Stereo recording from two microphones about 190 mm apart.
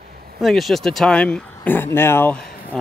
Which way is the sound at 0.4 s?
Centre (ahead or behind).